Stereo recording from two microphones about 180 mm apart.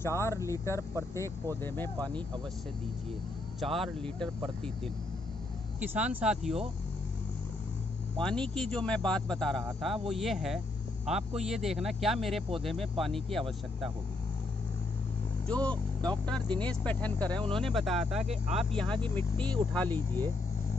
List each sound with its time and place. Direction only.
0.0 s speech: 15° left (ahead or behind)
3.6 s speech: centre (ahead or behind)
5.8 s speech: 5° right (ahead or behind)
8.2 s speech: 5° left (ahead or behind)
15.4 s speech: 5° left (ahead or behind)